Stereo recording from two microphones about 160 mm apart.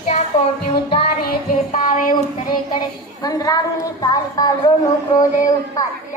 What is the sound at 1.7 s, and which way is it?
Child singing, 55° left (ahead or behind).